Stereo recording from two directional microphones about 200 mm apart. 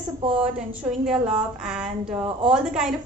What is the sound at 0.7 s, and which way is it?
Speech, 5° right (ahead or behind).